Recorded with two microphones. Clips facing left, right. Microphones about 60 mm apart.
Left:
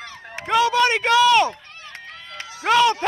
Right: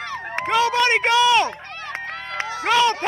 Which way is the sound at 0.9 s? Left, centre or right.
Right.